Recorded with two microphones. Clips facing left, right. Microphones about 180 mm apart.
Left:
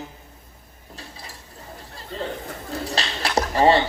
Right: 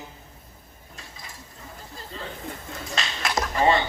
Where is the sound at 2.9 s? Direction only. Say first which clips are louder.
Left 3 dB; 35° left (ahead or behind).